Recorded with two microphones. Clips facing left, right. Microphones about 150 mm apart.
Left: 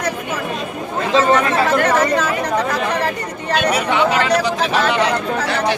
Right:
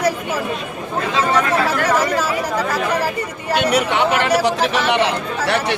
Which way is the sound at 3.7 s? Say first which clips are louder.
Even; 65° right (ahead or behind).